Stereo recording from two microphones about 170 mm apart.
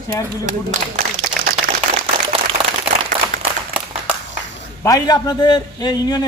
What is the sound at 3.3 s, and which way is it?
Applause, 50° right (ahead or behind).